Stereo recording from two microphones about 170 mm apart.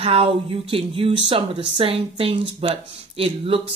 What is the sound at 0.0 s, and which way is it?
Speech, 35° right (ahead or behind).